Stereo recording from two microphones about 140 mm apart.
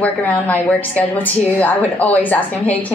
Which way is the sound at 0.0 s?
10° left (ahead or behind).